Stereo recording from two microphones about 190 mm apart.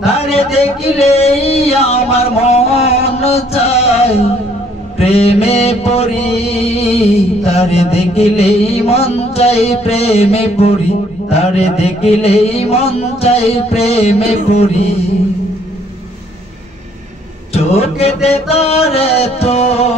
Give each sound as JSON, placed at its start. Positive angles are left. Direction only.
{"t": 0.4, "sound": "a sound", "side_deg": 30}
{"t": 4.9, "sound": "music", "side_deg": 30}
{"t": 11.2, "sound": "mantra", "side_deg": 35}
{"t": 17.6, "sound": "mantra", "side_deg": 35}